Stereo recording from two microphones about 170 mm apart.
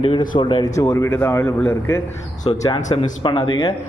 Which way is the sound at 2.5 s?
25° left (ahead or behind).